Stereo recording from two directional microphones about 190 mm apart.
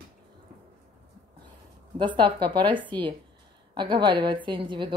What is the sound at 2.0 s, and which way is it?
A woman's voice, 25° right (ahead or behind).